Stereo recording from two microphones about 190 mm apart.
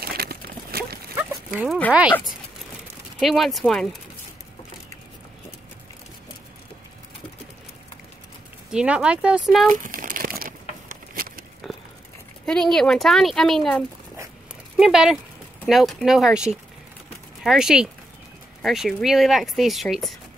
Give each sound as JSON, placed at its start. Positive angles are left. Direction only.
{"t": 0.0, "sound": "a sound", "side_deg": -55}
{"t": 1.1, "sound": "dog", "side_deg": -5}
{"t": 1.9, "sound": "speech", "side_deg": -5}
{"t": 3.2, "sound": "speech", "side_deg": 0}
{"t": 8.7, "sound": "speech", "side_deg": -5}
{"t": 9.7, "sound": "crumpling", "side_deg": -45}
{"t": 11.6, "sound": "a sound", "side_deg": 0}
{"t": 12.4, "sound": "speech", "side_deg": 5}